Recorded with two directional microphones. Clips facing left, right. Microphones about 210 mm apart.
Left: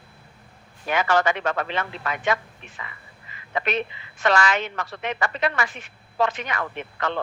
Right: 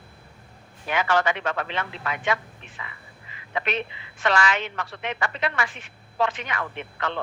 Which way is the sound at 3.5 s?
40° left (ahead or behind).